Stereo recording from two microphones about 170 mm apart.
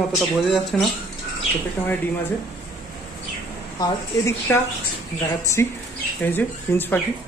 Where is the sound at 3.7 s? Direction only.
20° left (ahead or behind).